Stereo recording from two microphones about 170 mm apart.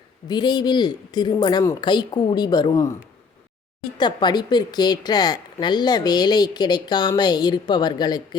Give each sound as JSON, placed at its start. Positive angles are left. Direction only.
{"t": 0.3, "sound": "a woman's voice", "side_deg": 25}
{"t": 3.9, "sound": "a woman's voice", "side_deg": 25}